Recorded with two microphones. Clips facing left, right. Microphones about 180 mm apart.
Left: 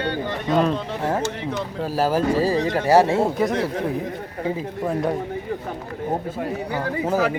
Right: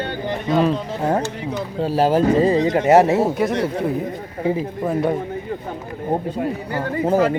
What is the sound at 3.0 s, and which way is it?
Speech, centre (ahead or behind).